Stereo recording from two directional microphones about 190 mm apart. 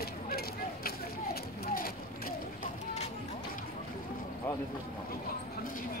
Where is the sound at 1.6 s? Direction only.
50° left (ahead or behind).